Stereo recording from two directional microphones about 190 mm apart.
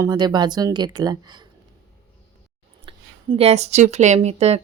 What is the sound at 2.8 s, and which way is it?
Speech, 30° right (ahead or behind).